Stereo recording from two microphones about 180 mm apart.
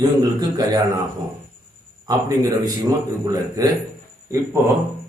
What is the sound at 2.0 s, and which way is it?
A man's voice, 20° right (ahead or behind).